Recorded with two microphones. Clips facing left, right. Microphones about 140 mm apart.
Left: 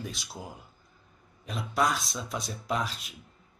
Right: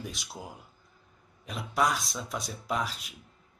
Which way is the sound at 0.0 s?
20° right (ahead or behind).